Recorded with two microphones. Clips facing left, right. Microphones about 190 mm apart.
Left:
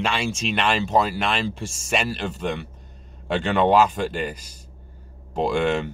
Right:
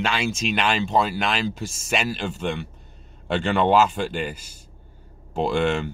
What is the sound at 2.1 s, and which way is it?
Speech, 40° left (ahead or behind).